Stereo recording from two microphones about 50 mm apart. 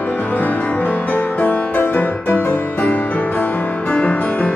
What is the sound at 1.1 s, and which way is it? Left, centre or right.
Music, left.